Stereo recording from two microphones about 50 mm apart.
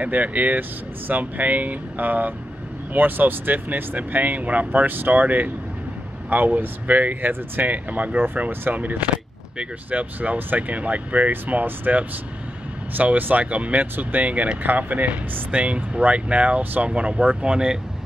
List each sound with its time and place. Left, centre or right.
0.0 s speech: right; by 17.7 s centre